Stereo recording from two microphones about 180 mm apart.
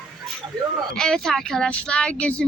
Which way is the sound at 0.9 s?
5° left (ahead or behind).